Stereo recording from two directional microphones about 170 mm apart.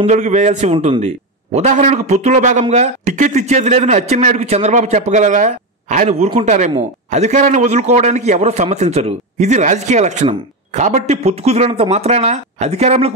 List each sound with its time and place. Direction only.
0.0 s a man's voice: 45° right (ahead or behind)